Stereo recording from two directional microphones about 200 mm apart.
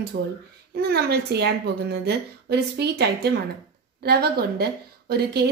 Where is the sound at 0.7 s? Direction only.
55° right (ahead or behind).